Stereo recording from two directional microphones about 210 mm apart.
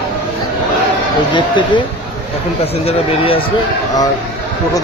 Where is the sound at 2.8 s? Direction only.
25° left (ahead or behind).